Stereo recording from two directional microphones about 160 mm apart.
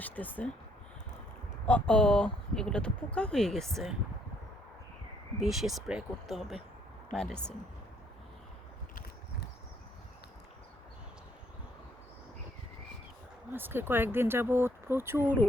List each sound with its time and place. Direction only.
0.0 s speech: 10° left (ahead or behind)
1.6 s speech: 5° left (ahead or behind)
5.4 s speech: centre (ahead or behind)
13.5 s speech: 15° right (ahead or behind)